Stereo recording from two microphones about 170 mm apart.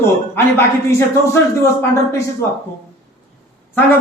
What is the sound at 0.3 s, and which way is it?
A man's voice, 15° left (ahead or behind).